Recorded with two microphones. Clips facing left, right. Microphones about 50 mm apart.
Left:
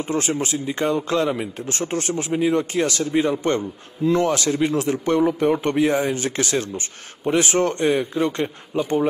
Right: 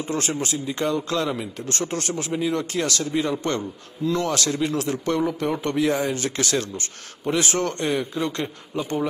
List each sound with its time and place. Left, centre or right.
0.0 s a man's voice: left